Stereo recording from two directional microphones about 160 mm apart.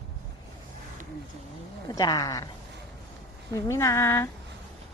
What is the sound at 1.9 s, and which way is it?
Speech, 25° left (ahead or behind).